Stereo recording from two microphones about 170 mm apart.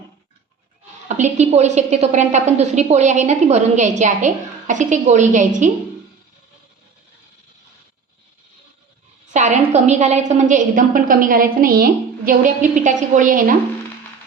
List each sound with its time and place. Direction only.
1.0 s a woman's voice: 45° right (ahead or behind)
9.3 s a woman's voice: 45° right (ahead or behind)